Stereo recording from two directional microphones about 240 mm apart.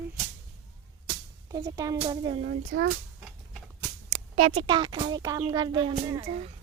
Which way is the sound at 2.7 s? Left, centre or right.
Right.